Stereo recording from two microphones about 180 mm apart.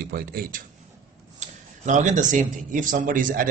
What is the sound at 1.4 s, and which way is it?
Speech, 40° right (ahead or behind).